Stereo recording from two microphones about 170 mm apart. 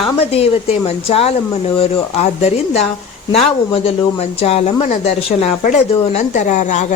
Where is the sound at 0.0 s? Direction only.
35° left (ahead or behind).